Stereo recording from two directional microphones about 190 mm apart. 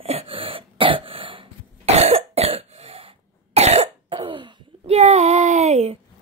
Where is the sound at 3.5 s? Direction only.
35° right (ahead or behind).